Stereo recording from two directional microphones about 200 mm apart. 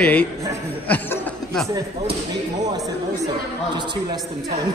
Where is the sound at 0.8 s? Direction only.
10° left (ahead or behind).